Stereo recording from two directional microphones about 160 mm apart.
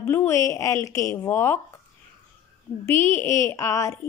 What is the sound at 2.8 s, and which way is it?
A woman's voice, 15° left (ahead or behind).